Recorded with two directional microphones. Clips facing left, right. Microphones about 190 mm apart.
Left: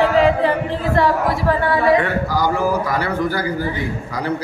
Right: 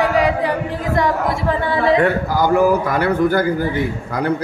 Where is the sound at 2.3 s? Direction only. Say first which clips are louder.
Right 4 dB; 55° right (ahead or behind).